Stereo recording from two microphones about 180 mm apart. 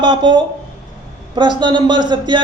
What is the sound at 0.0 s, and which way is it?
A man's voice, 25° right (ahead or behind).